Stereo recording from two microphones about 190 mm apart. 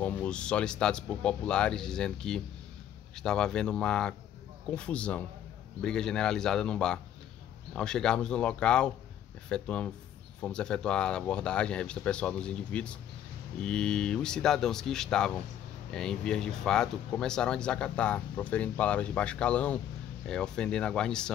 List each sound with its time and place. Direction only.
0.0 s speech: 5° left (ahead or behind)